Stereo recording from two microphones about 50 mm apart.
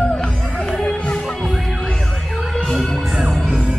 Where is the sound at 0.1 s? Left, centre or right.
Centre.